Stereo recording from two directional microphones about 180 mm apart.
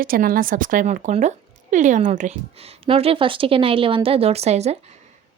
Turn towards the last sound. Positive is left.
turn(degrees=-35)  # may be behind; listen again after turning